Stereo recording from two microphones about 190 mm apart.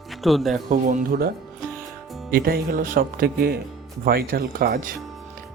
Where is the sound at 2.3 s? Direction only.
50° right (ahead or behind).